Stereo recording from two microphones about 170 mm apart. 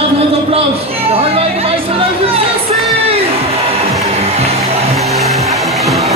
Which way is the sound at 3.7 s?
35° right (ahead or behind).